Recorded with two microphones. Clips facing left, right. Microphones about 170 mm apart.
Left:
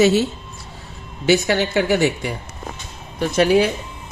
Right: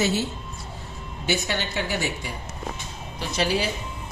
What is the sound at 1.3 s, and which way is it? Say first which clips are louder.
Speech: left 10 dB; 80° left.